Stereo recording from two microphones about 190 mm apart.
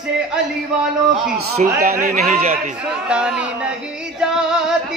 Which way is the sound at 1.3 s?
50° right (ahead or behind).